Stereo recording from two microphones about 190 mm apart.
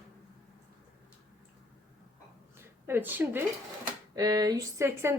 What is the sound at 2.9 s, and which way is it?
Speech, 10° right (ahead or behind).